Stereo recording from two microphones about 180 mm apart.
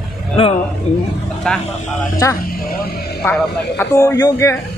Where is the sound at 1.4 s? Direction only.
5° left (ahead or behind).